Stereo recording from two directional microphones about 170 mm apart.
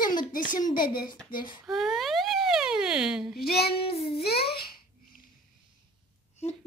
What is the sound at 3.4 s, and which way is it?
Female singing, 65° left (ahead or behind).